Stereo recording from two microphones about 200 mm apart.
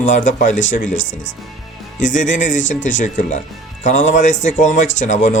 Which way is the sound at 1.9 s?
40° left (ahead or behind).